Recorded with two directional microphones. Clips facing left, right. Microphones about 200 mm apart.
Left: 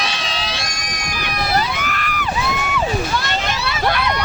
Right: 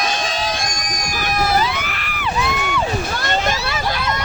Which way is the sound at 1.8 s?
45° left (ahead or behind).